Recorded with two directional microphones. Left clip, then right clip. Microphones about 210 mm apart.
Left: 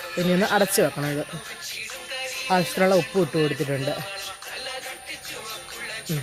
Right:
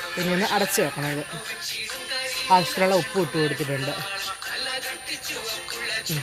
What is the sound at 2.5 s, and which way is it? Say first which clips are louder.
Speech: right 1 dB; 30° left (ahead or behind).